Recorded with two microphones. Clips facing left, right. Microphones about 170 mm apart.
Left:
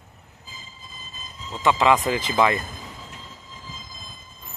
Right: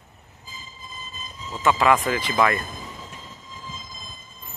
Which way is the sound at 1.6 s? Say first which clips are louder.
Even; 15° left (ahead or behind).